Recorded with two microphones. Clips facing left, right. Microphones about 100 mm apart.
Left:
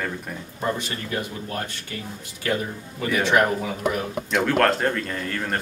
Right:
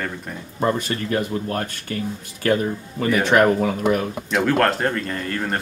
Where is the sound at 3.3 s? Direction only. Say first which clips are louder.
Right 4 dB; 50° right (ahead or behind).